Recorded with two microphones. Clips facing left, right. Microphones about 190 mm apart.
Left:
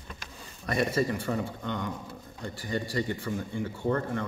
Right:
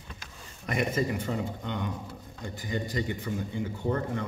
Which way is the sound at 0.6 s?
15° right (ahead or behind).